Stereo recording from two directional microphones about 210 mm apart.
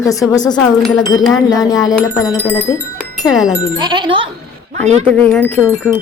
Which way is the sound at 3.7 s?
20° right (ahead or behind).